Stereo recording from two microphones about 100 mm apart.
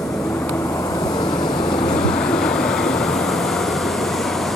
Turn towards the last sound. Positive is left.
turn(degrees=5)  # may be behind; listen again after turning